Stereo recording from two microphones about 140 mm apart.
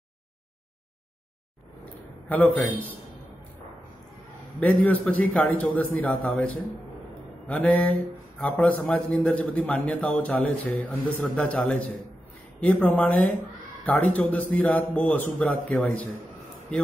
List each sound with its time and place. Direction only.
2.2 s a man's voice: 10° left (ahead or behind)
4.6 s a man's voice: 10° left (ahead or behind)